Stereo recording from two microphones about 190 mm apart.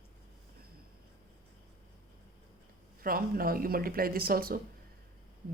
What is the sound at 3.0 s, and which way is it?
Speech, 50° right (ahead or behind).